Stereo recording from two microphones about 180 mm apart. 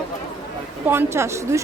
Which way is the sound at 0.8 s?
15° right (ahead or behind).